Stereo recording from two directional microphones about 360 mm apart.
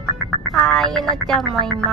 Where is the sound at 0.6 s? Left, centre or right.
Centre.